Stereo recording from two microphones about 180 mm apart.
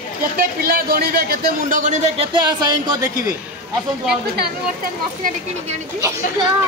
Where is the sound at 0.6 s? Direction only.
55° right (ahead or behind); by 2.4 s 35° right (ahead or behind).